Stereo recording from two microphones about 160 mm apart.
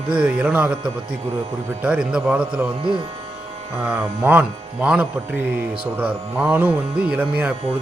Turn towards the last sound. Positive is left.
turn(degrees=-10)  # may be behind; listen again after turning